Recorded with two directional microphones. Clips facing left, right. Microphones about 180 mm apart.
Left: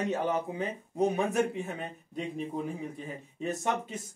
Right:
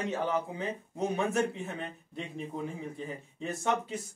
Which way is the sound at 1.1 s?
15° left (ahead or behind).